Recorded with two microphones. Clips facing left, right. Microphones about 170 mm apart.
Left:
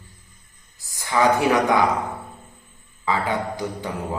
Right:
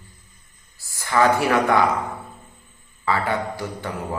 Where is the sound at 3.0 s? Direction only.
15° left (ahead or behind).